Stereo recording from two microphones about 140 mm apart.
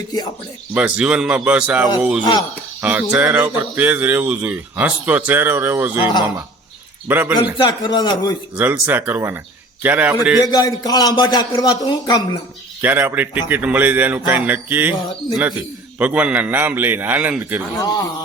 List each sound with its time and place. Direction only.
0.7 s speech: 10° right (ahead or behind)
7.1 s speech: 15° right (ahead or behind)
7.5 s speech: 35° left (ahead or behind)
8.5 s speech: 10° right (ahead or behind)
10.4 s a man's voice: 25° left (ahead or behind)
12.8 s speech: 15° right (ahead or behind)
16.0 s speech: 10° right (ahead or behind)
17.7 s a man's voice: 25° left (ahead or behind)